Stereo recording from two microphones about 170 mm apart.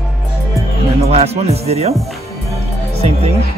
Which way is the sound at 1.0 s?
35° right (ahead or behind).